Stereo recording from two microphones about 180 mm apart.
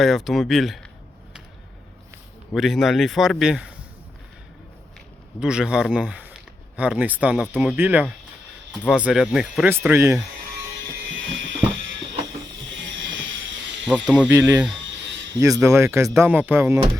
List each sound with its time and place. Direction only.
0.0 s a man's voice: centre (ahead or behind)
2.6 s a man's voice: centre (ahead or behind)
5.4 s a man's voice: 5° right (ahead or behind)
11.1 s ratchet: 90° right
12.7 s a sound: 90° right
14.2 s speech: 15° right (ahead or behind)